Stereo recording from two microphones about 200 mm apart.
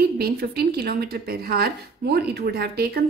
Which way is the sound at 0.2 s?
50° right (ahead or behind).